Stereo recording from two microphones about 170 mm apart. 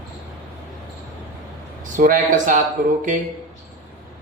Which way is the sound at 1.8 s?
50° right (ahead or behind).